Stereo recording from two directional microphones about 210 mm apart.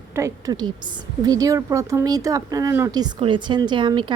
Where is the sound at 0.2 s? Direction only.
15° right (ahead or behind).